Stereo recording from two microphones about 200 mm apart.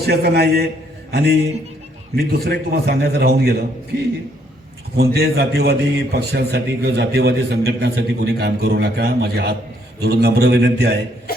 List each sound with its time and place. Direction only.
0.0 s a man's voice: 55° right (ahead or behind)
4.9 s a man's voice: 50° right (ahead or behind)
11.3 s a sound: 50° left (ahead or behind)